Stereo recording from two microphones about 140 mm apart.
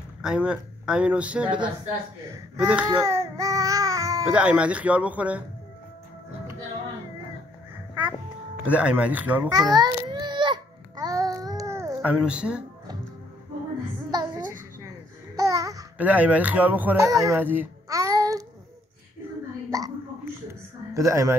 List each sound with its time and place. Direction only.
0.2 s speech: 5° right (ahead or behind)
2.9 s baby cry: 20° right (ahead or behind)
4.3 s speech: 10° right (ahead or behind)
8.6 s speech: 10° right (ahead or behind)
9.5 s babbling: 30° right (ahead or behind)
12.0 s speech: 10° right (ahead or behind)
14.1 s music: 30° right (ahead or behind)
15.3 s babbling: 25° right (ahead or behind)
16.0 s speech: 10° right (ahead or behind)
17.1 s speech: 20° right (ahead or behind)
17.8 s child singing: 25° right (ahead or behind)
19.7 s hiccup: 25° right (ahead or behind)
20.9 s speech: 20° right (ahead or behind)